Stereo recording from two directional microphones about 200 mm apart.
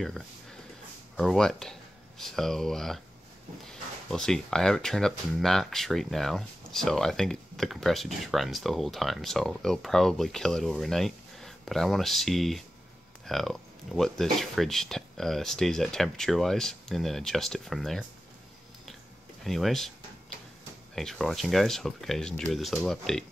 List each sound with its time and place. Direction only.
1.1 s speech: centre (ahead or behind)
19.4 s speech: centre (ahead or behind)
20.9 s speech: centre (ahead or behind)